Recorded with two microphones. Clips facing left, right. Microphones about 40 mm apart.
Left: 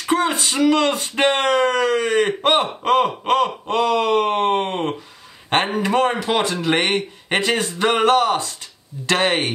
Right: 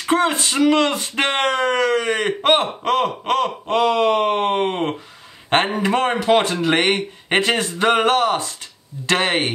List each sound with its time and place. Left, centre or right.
0.0 s speech: right
1.2 s speech: right
2.7 s a sound: centre
3.8 s speech: centre
4.6 s speech: right
5.5 s speech: centre
6.6 s speech: right
7.8 s speech: centre
9.1 s speech: centre